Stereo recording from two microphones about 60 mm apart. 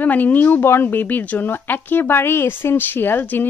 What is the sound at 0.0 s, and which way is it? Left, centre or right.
Speech, left.